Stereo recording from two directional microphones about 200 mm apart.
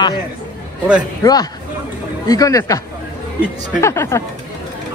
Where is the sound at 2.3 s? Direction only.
15° left (ahead or behind).